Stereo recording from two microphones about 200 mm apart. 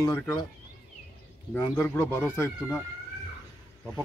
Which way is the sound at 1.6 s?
10° left (ahead or behind).